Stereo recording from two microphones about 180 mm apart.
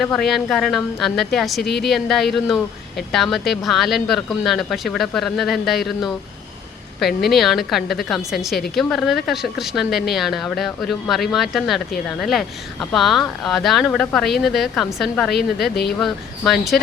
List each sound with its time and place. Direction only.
0.0 s speech: centre (ahead or behind)
7.2 s speech: centre (ahead or behind)
15.7 s speech: 65° left (ahead or behind)
16.0 s speech: centre (ahead or behind)